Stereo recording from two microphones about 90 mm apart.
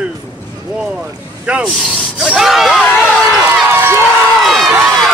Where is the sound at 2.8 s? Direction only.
20° left (ahead or behind).